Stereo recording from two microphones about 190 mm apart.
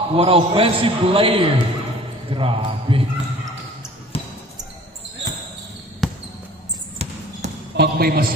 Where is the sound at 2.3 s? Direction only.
30° right (ahead or behind).